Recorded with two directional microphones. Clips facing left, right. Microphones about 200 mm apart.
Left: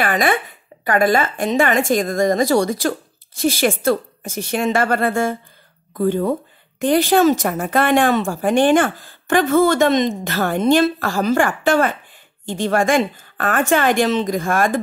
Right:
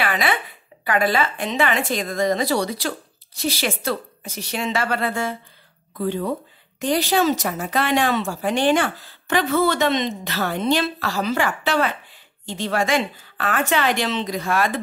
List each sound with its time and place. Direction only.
0.0 s speech: 45° left (ahead or behind)